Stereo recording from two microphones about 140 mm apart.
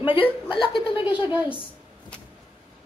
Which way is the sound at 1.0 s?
10° right (ahead or behind).